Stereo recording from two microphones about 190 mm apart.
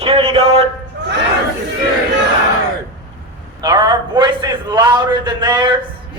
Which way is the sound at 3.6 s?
25° right (ahead or behind).